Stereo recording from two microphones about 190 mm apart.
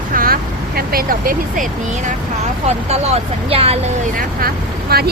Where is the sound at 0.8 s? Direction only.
50° right (ahead or behind).